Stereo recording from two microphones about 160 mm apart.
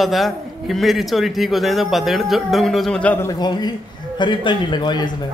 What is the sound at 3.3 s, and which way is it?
A man's voice, 25° left (ahead or behind).